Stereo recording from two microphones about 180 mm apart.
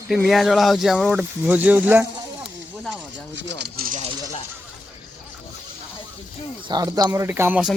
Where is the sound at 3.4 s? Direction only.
65° right (ahead or behind).